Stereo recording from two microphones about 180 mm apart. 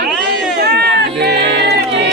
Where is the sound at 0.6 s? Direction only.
65° right (ahead or behind).